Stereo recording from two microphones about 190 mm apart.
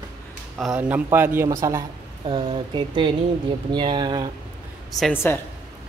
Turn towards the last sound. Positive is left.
turn(degrees=15)  # may be behind; listen again after turning